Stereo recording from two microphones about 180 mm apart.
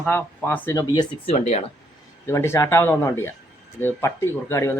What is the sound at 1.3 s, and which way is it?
Speech, 35° left (ahead or behind).